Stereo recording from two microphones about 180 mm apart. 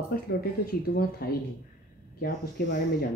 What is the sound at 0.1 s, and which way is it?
Speech, 55° left (ahead or behind).